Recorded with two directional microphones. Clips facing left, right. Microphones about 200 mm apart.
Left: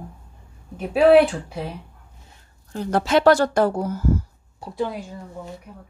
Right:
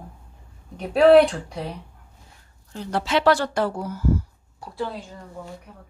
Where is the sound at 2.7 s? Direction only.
50° left (ahead or behind).